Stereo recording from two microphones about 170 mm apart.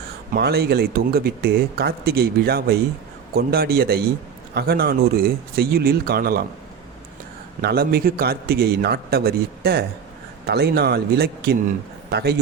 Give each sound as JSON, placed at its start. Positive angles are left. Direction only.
{"t": 0.3, "sound": "a man's voice", "side_deg": -70}
{"t": 7.6, "sound": "a man's voice", "side_deg": -65}